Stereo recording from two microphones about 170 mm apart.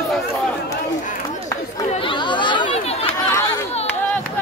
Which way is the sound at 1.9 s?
30° left (ahead or behind).